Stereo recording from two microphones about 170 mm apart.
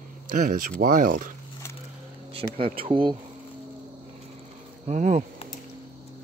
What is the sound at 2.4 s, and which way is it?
Speech, 45° right (ahead or behind).